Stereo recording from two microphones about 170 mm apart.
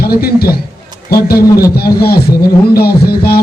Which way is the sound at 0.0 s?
65° left (ahead or behind).